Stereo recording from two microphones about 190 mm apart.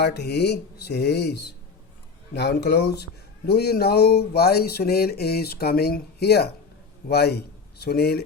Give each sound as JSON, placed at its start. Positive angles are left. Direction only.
{"t": 0.0, "sound": "a man's voice", "side_deg": 60}